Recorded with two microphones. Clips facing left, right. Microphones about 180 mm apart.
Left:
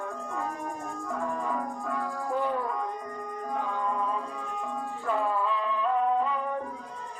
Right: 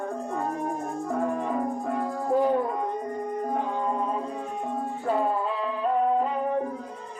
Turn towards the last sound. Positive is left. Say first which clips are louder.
# right 4 dB
turn(degrees=-40)  # may be behind; listen again after turning